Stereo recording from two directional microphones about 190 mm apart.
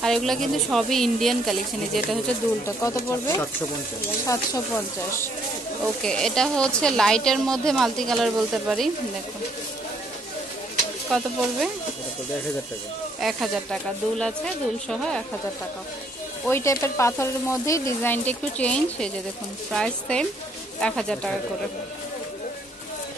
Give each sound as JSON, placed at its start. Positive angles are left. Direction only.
{"t": 0.0, "sound": "a woman's voice", "side_deg": 0}
{"t": 2.6, "sound": "speech", "side_deg": 15}
{"t": 6.0, "sound": "a woman's voice", "side_deg": 5}
{"t": 11.1, "sound": "a woman's voice", "side_deg": 0}
{"t": 13.2, "sound": "a woman's voice", "side_deg": 0}
{"t": 16.4, "sound": "a woman's voice", "side_deg": 15}